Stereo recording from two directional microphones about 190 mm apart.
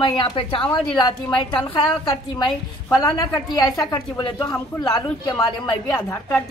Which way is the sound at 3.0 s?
20° left (ahead or behind).